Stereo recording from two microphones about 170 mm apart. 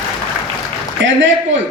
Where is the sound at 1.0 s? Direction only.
90° right.